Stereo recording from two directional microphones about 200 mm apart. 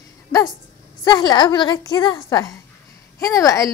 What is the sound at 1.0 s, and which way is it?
A woman's voice, 20° left (ahead or behind).